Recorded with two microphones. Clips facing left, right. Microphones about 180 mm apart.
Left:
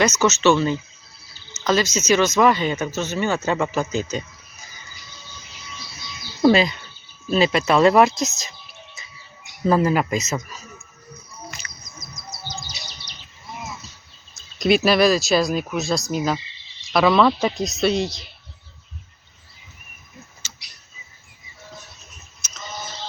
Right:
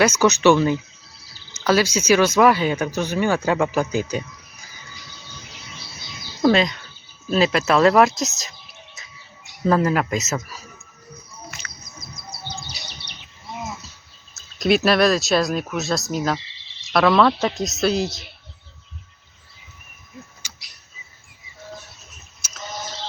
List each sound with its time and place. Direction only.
0.0 s speech: 10° right (ahead or behind)
6.4 s speech: 5° left (ahead or behind)
9.6 s speech: 5° left (ahead or behind)
12.6 s bird: 65° right (ahead or behind)
14.6 s speech: centre (ahead or behind)
20.4 s bird: 10° right (ahead or behind)
22.4 s synthetic singing: 5° right (ahead or behind)